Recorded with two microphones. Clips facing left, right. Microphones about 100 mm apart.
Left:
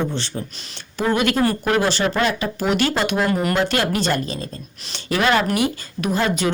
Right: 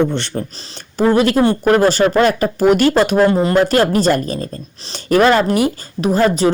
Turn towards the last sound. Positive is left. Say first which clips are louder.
# right 7 dB
turn(degrees=-35)  # may be behind; listen again after turning